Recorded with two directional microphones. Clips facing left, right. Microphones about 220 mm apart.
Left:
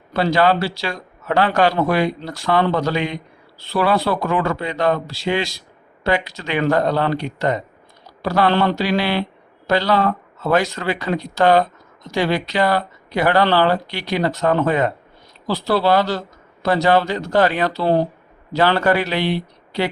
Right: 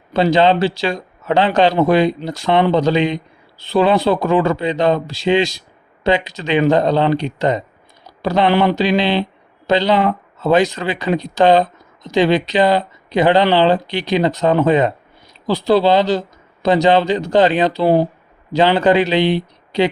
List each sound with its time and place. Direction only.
0.1 s speech: 20° right (ahead or behind)